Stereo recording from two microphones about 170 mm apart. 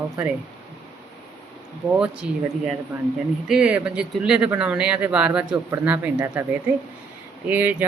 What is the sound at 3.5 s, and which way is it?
Speech, 5° right (ahead or behind).